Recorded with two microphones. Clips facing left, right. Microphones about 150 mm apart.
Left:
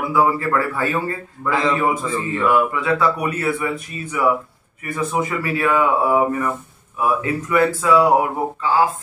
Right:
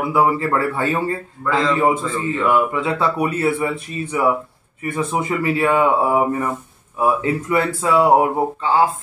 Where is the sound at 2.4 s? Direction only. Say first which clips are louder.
Even; 25° right (ahead or behind).